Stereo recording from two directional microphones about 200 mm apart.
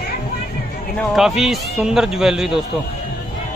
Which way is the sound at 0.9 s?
Centre (ahead or behind).